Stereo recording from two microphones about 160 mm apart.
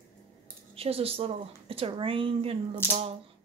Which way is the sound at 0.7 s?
35° right (ahead or behind).